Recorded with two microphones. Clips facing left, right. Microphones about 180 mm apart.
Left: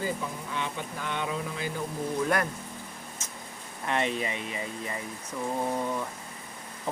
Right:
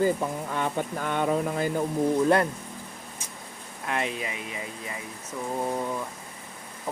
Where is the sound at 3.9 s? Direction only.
5° right (ahead or behind).